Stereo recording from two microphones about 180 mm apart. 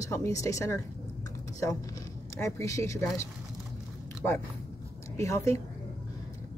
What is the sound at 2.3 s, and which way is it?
Speech, 15° left (ahead or behind).